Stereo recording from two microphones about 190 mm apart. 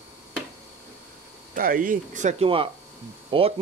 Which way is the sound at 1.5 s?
45° right (ahead or behind).